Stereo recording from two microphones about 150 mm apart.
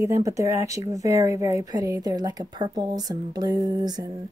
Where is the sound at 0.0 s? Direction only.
20° right (ahead or behind).